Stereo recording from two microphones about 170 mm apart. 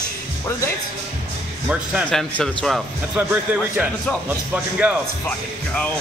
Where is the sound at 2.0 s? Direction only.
5° left (ahead or behind).